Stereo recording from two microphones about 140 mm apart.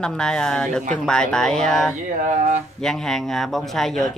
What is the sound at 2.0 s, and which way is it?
Mantra, 60° right (ahead or behind).